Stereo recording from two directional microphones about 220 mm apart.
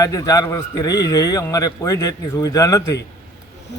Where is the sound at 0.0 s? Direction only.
15° left (ahead or behind).